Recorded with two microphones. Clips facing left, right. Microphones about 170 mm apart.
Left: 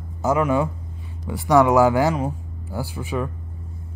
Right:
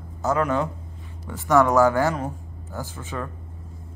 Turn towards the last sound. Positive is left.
turn(degrees=15)  # may be behind; listen again after turning